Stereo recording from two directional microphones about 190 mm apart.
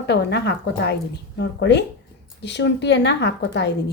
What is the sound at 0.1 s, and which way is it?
A woman's voice, 60° left (ahead or behind).